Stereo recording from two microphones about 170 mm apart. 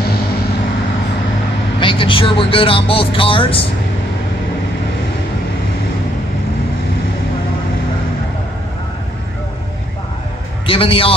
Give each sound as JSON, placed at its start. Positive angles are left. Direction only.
{"t": 1.8, "sound": "speech", "side_deg": 30}
{"t": 10.7, "sound": "a man's voice", "side_deg": 30}